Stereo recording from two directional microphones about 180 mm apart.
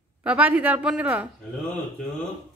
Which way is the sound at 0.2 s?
10° right (ahead or behind).